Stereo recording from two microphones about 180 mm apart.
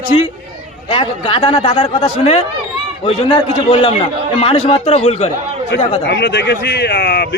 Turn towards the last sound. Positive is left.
turn(degrees=65)  # may be behind; listen again after turning